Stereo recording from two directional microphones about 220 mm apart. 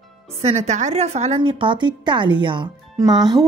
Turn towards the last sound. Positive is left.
turn(degrees=-20)  # may be behind; listen again after turning